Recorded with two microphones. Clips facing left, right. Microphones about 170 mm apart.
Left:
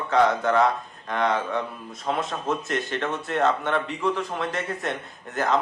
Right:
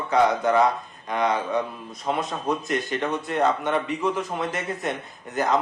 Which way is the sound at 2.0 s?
Centre (ahead or behind).